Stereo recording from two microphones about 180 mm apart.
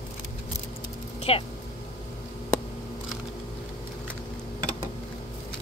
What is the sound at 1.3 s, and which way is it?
Speech, 35° left (ahead or behind).